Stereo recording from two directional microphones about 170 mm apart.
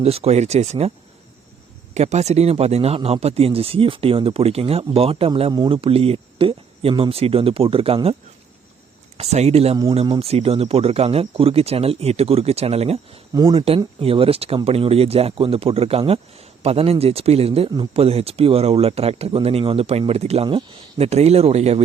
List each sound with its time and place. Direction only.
0.0 s speech: 35° right (ahead or behind)
9.1 s speech: 40° right (ahead or behind)
13.3 s speech: 25° right (ahead or behind)